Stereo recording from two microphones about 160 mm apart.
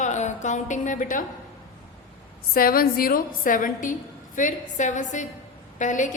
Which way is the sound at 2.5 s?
65° left (ahead or behind).